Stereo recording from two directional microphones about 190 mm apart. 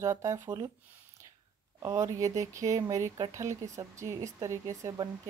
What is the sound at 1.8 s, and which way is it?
Speech, 15° right (ahead or behind).